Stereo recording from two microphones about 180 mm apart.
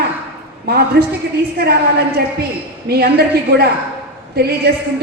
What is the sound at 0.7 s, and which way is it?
A woman's voice, 60° right (ahead or behind).